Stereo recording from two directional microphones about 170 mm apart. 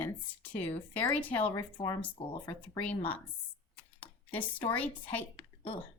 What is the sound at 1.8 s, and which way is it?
Speech, 35° left (ahead or behind).